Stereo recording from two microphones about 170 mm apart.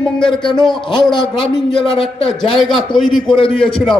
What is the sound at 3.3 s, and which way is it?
Speech, 30° left (ahead or behind).